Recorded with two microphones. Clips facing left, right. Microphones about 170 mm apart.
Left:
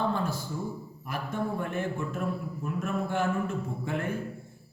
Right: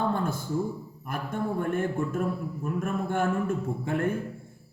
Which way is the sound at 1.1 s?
50° right (ahead or behind).